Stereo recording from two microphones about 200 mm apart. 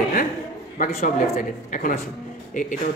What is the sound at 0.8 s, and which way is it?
A man's voice, 40° left (ahead or behind).